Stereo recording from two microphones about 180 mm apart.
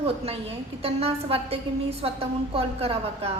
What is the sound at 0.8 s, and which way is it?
A woman's voice, 35° right (ahead or behind).